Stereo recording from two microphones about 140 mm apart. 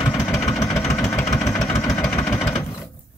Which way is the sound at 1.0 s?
20° left (ahead or behind).